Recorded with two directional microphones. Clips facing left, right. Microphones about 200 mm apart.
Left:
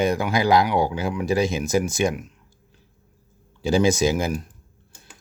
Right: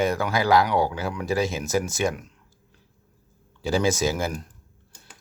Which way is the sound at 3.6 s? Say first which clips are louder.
Left 4 dB; 15° left (ahead or behind).